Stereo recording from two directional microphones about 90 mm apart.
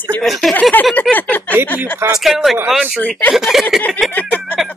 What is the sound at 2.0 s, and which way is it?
Speech, 25° right (ahead or behind).